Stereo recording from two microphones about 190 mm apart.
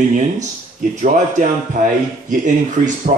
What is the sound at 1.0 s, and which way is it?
Speech, 40° right (ahead or behind).